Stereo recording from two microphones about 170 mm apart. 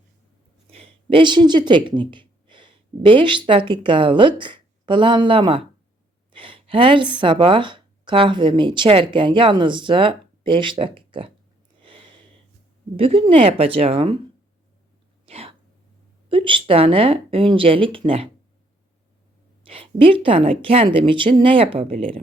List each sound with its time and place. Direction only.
0.7 s a woman's voice: 35° right (ahead or behind)
11.8 s a sound: 30° right (ahead or behind)
13.0 s a woman's voice: 35° right (ahead or behind)
15.3 s a sound: 35° right (ahead or behind)
16.3 s a woman's voice: 30° right (ahead or behind)
19.6 s a woman's voice: 30° right (ahead or behind)